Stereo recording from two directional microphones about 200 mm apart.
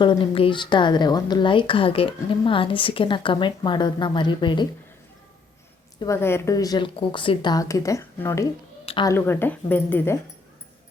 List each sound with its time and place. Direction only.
0.0 s a woman's voice: 25° left (ahead or behind)
6.0 s a woman's voice: 15° left (ahead or behind)
8.9 s a woman's voice: 25° left (ahead or behind)
9.1 s a woman's voice: 10° left (ahead or behind)